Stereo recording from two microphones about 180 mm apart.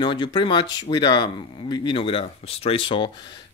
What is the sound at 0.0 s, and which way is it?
Speech, 25° left (ahead or behind).